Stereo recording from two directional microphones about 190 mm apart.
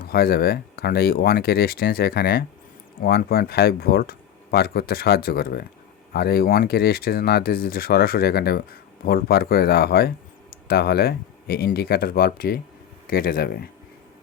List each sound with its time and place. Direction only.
0.0 s speech: 55° left (ahead or behind)